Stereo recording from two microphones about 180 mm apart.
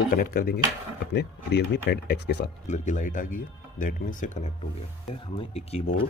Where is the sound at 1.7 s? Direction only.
70° left (ahead or behind).